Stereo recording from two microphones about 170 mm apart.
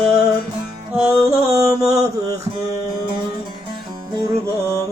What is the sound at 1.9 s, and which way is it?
Mantra, 20° right (ahead or behind).